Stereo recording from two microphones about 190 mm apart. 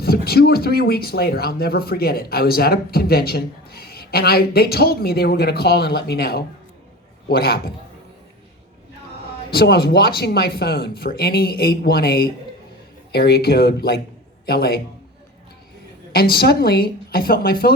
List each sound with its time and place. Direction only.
0.0 s speech: 55° left (ahead or behind)
9.5 s speech: 55° left (ahead or behind)
16.1 s speech: 55° left (ahead or behind)